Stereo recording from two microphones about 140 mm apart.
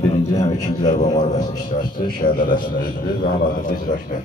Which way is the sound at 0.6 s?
55° left (ahead or behind).